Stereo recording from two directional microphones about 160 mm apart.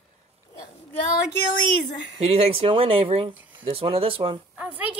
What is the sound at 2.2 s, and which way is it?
Speech, 40° right (ahead or behind).